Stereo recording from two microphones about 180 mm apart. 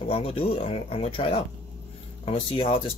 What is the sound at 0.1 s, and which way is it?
Speech, 30° left (ahead or behind).